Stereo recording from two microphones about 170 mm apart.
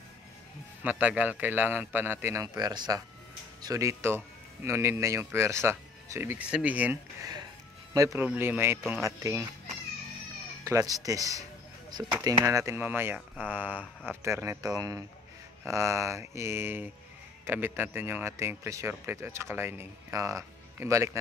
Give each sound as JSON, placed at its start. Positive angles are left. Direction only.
{"t": 0.8, "sound": "speech", "side_deg": -10}
{"t": 10.6, "sound": "speech", "side_deg": -15}
{"t": 12.4, "sound": "speech", "side_deg": -15}